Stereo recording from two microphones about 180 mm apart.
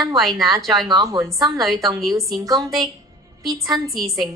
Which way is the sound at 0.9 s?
20° right (ahead or behind).